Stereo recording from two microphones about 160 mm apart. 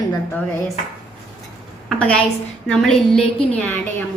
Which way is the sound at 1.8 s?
10° left (ahead or behind).